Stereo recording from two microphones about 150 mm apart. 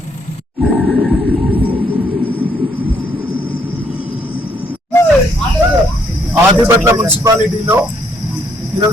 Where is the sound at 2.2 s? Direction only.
10° right (ahead or behind).